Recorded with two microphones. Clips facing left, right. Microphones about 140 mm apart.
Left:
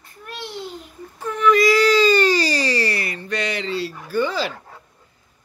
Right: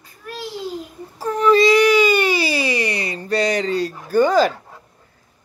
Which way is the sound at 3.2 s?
40° right (ahead or behind).